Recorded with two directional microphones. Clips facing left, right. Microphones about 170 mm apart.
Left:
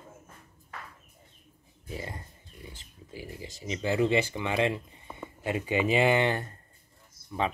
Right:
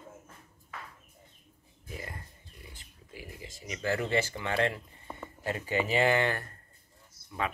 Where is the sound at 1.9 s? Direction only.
25° left (ahead or behind).